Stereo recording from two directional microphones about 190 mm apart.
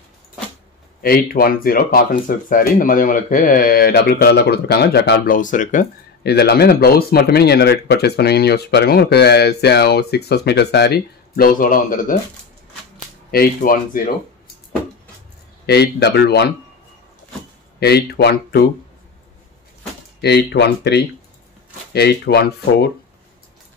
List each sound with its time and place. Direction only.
1.0 s speech: 50° left (ahead or behind)
13.3 s speech: 50° left (ahead or behind)
15.6 s speech: 60° left (ahead or behind)
17.7 s speech: 60° left (ahead or behind)
20.2 s speech: 60° left (ahead or behind)